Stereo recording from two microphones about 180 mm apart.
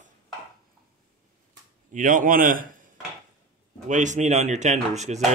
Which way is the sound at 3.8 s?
45° right (ahead or behind).